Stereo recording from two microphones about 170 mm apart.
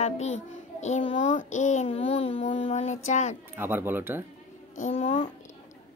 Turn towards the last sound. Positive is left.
turn(degrees=35)  # may be behind; listen again after turning